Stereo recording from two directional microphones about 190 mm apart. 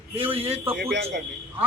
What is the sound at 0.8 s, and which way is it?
Speech, 65° right (ahead or behind).